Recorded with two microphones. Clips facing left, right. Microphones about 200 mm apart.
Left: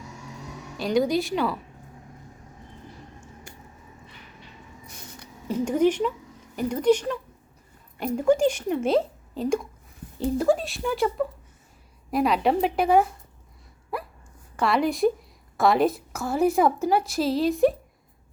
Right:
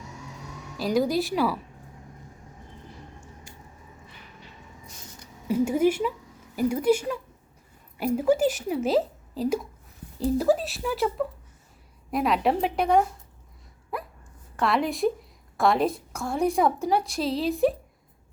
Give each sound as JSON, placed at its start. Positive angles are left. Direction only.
{"t": 0.8, "sound": "a woman's voice", "side_deg": 0}
{"t": 3.5, "sound": "a sound", "side_deg": 65}
{"t": 5.5, "sound": "a woman's voice", "side_deg": -10}
{"t": 14.5, "sound": "a woman's voice", "side_deg": 0}